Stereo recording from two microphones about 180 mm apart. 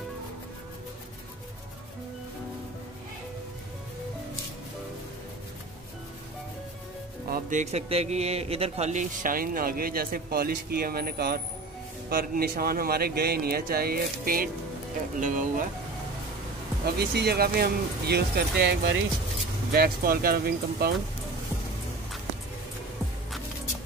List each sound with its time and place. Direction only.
7.2 s a man's voice: 50° right (ahead or behind)
16.8 s speech: 60° right (ahead or behind)